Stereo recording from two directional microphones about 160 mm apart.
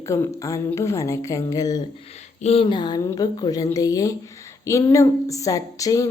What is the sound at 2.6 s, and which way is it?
A woman's voice, 25° left (ahead or behind).